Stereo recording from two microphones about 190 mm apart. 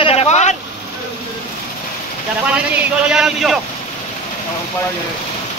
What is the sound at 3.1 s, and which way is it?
Speech, centre (ahead or behind).